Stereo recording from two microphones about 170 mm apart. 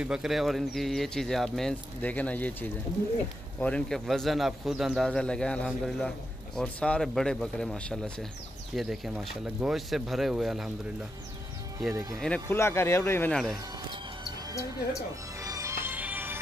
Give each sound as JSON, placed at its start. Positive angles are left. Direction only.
{"t": 0.0, "sound": "speech", "side_deg": -5}
{"t": 11.9, "sound": "speech", "side_deg": -20}
{"t": 12.4, "sound": "speech", "side_deg": 15}
{"t": 14.5, "sound": "speech", "side_deg": 20}
{"t": 15.4, "sound": "music", "side_deg": -20}